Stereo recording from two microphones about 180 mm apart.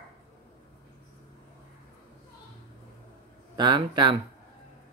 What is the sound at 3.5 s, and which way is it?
Speech, 25° right (ahead or behind).